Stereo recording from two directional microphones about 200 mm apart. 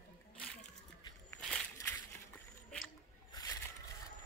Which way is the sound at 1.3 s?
Centre (ahead or behind).